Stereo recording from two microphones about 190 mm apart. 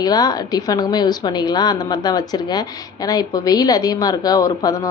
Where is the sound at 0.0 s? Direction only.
20° left (ahead or behind).